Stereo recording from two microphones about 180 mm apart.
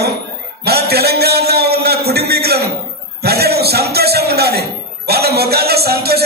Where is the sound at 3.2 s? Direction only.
60° right (ahead or behind).